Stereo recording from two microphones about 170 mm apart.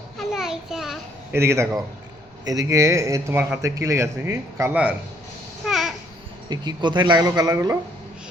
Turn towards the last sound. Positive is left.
turn(degrees=-20)  # may be behind; listen again after turning